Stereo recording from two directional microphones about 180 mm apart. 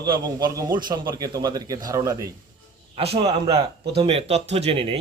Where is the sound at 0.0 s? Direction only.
20° right (ahead or behind).